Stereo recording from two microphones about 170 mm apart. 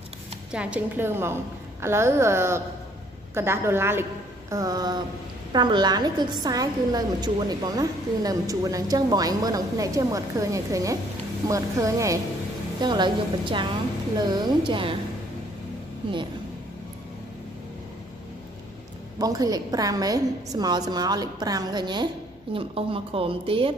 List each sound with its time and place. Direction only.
0.5 s a woman's voice: 5° right (ahead or behind); by 15.0 s 30° right (ahead or behind)
19.1 s a woman's voice: 20° right (ahead or behind)